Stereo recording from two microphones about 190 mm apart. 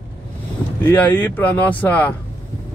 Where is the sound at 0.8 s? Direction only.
10° left (ahead or behind).